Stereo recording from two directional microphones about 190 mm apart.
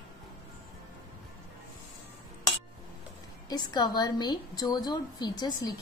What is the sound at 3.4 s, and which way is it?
A woman's voice, 20° left (ahead or behind).